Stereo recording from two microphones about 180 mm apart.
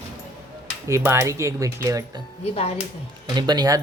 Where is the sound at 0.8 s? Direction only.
15° right (ahead or behind).